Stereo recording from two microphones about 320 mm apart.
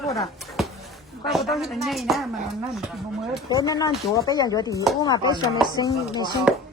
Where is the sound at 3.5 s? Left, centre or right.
Centre.